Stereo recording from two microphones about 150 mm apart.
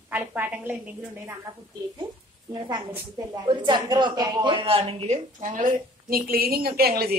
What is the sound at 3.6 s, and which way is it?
A woman's voice, 30° right (ahead or behind).